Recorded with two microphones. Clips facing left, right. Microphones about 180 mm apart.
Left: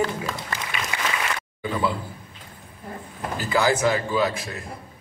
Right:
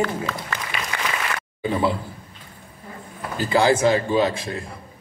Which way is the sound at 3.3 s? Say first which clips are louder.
Right 4 dB; 25° right (ahead or behind).